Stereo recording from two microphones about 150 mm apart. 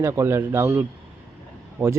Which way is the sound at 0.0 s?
20° right (ahead or behind).